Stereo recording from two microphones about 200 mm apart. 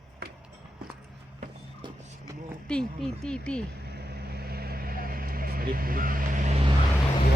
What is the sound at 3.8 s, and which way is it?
Vehicle, 50° right (ahead or behind).